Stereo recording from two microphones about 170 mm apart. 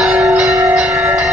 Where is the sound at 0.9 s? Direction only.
15° right (ahead or behind).